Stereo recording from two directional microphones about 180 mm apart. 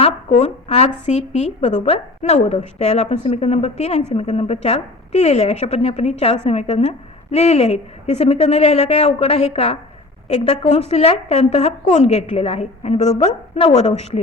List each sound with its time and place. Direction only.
0.0 s a sound: 40° left (ahead or behind)
1.0 s a woman's voice: 40° left (ahead or behind)
13.1 s a woman's voice: 25° left (ahead or behind)
13.7 s a woman's voice: 40° left (ahead or behind)